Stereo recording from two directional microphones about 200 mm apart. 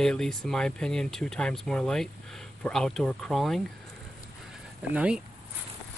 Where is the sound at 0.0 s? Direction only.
5° left (ahead or behind).